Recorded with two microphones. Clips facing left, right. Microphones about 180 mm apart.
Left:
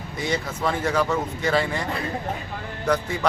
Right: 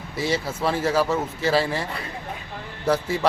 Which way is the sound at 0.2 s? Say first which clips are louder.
Right 2 dB; 5° right (ahead or behind).